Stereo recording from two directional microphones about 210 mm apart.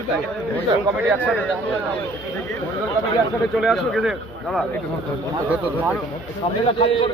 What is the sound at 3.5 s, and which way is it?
Speech, centre (ahead or behind).